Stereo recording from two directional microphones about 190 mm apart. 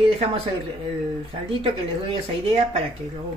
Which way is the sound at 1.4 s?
30° right (ahead or behind).